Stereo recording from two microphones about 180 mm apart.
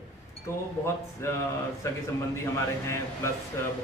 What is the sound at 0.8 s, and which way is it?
Speech, 15° left (ahead or behind).